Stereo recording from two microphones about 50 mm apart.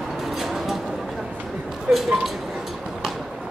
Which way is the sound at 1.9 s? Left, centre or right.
Centre.